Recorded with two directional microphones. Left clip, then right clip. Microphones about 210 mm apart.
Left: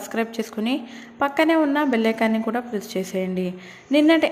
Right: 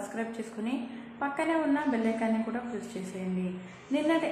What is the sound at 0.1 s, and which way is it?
A woman's voice, 45° left (ahead or behind).